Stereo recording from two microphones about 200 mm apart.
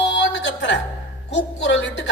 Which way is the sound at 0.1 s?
65° left (ahead or behind).